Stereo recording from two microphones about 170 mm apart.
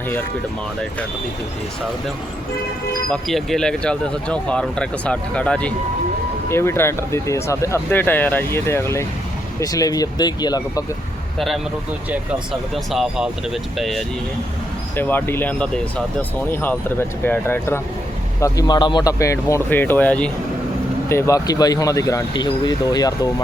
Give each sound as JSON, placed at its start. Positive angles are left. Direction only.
{"t": 3.1, "sound": "speech", "side_deg": 0}
{"t": 11.3, "sound": "speech", "side_deg": 0}
{"t": 14.9, "sound": "speech", "side_deg": 10}